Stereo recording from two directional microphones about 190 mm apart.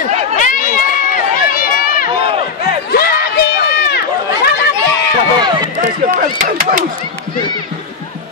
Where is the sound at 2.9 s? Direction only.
55° left (ahead or behind).